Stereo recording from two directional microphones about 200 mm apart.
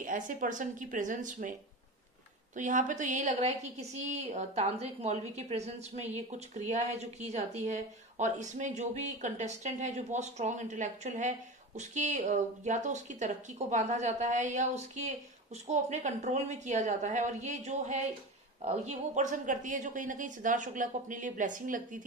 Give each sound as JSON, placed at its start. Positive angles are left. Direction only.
{"t": 0.3, "sound": "a woman's voice", "side_deg": -40}
{"t": 2.5, "sound": "a woman's voice", "side_deg": -40}